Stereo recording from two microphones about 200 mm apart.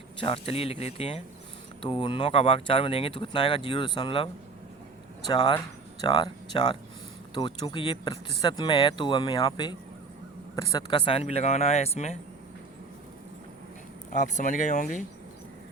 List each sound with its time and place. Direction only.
0.2 s speech: 30° left (ahead or behind)
5.3 s speech: 20° left (ahead or behind)
14.1 s speech: 35° left (ahead or behind)